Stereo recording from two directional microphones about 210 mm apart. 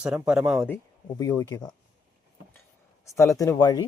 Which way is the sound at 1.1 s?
15° left (ahead or behind).